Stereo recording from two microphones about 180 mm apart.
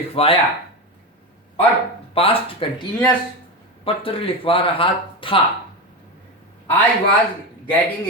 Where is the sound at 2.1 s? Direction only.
30° left (ahead or behind).